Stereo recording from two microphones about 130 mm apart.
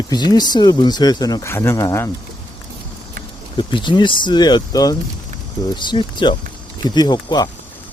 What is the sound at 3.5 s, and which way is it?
Speech, 40° left (ahead or behind).